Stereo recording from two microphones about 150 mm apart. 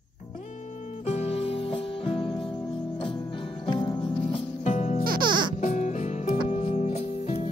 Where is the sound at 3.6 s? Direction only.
30° left (ahead or behind).